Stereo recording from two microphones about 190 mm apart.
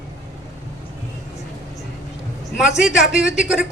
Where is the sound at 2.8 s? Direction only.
5° right (ahead or behind).